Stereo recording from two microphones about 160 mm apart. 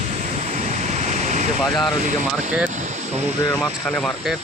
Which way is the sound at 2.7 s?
50° right (ahead or behind).